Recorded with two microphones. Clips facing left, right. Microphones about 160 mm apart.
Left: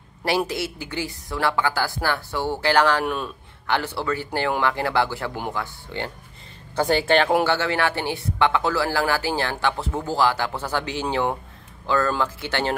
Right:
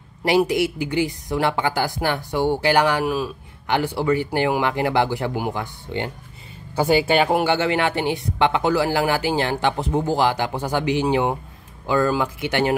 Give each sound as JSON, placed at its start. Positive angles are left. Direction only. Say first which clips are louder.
{"t": 0.2, "sound": "speech", "louder": "right 6 dB", "side_deg": -15}